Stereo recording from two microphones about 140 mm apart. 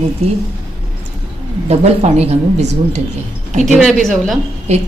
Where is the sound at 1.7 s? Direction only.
50° right (ahead or behind).